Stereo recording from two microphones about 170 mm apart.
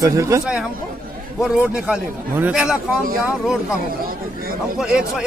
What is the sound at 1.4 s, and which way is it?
Speech, 5° right (ahead or behind).